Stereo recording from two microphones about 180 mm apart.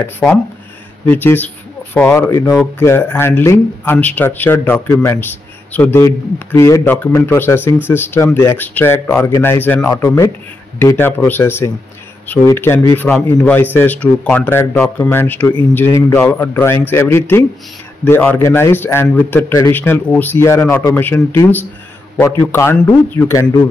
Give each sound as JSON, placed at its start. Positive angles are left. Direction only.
{"t": 1.1, "sound": "a man's voice", "side_deg": 10}